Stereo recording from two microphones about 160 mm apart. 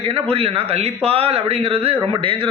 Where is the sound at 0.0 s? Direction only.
35° right (ahead or behind).